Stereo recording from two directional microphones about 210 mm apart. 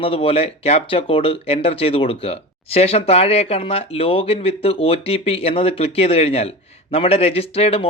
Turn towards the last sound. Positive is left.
turn(degrees=30)  # may be behind; listen again after turning